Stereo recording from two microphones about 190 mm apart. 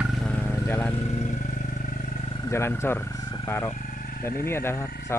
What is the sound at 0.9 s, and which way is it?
Vehicle, 35° left (ahead or behind).